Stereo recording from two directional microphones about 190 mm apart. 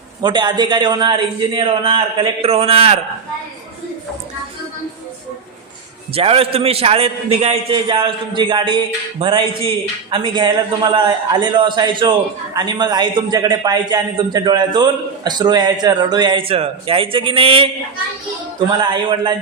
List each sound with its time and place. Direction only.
0.2 s a man's voice: 25° right (ahead or behind)
6.1 s a man's voice: 30° right (ahead or behind)
18.7 s a man's voice: 25° right (ahead or behind)